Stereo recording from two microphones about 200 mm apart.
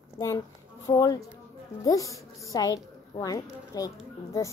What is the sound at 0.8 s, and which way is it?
A woman's voice, 20° left (ahead or behind).